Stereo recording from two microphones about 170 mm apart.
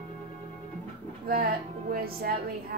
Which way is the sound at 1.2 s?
60° right (ahead or behind).